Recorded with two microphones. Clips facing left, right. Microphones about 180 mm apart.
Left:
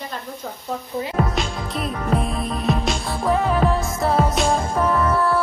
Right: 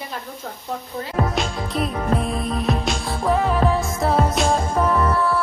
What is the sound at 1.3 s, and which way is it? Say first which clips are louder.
Music: right 1 dB; centre (ahead or behind).